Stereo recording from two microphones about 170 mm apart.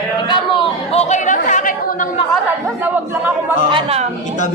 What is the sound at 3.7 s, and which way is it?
Speech, 35° right (ahead or behind).